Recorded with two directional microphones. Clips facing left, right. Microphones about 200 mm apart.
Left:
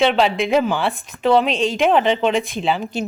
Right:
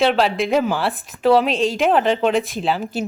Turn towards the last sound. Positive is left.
turn(degrees=-5)  # may be behind; listen again after turning